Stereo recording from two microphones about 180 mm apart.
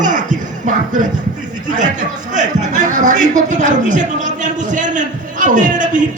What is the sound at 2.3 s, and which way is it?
A man's voice, 45° right (ahead or behind).